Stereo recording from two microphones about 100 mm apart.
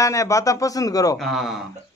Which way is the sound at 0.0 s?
30° left (ahead or behind).